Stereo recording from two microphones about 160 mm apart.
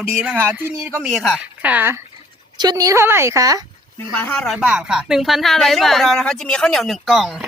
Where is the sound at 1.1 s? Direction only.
Centre (ahead or behind).